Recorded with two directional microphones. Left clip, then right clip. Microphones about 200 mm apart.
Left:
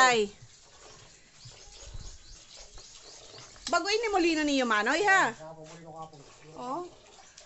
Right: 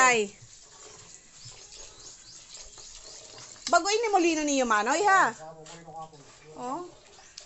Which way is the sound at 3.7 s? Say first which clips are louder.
Right 4 dB; centre (ahead or behind).